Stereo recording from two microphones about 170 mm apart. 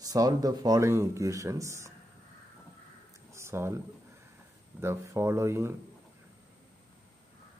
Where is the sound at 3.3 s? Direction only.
15° right (ahead or behind).